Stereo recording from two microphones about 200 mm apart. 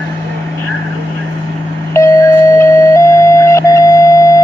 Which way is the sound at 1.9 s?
15° left (ahead or behind).